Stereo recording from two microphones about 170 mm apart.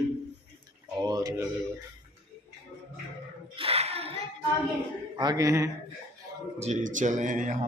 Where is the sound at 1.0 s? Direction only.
20° right (ahead or behind).